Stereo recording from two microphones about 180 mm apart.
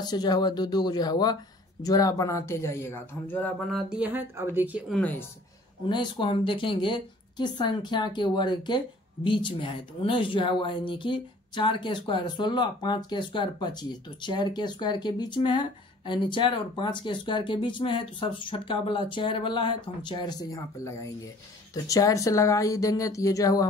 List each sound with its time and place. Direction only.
0.0 s a woman's voice: 25° left (ahead or behind)
3.9 s speech: 10° right (ahead or behind)
5.9 s a woman's voice: 25° left (ahead or behind)